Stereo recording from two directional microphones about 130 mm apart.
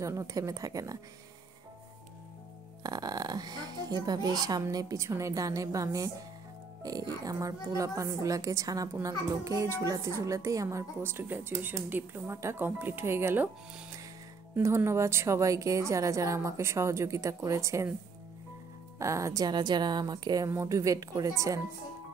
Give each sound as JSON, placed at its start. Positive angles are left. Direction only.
{"t": 0.0, "sound": "speech", "side_deg": -25}
{"t": 2.8, "sound": "speech", "side_deg": -30}
{"t": 14.5, "sound": "speech", "side_deg": -20}
{"t": 18.9, "sound": "speech", "side_deg": -25}